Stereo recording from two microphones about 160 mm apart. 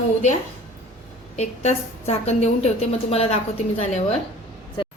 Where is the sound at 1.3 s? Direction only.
45° left (ahead or behind).